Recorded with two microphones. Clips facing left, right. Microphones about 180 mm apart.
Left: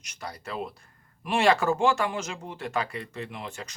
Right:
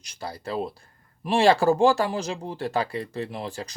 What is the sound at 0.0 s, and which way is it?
Speech, 30° right (ahead or behind).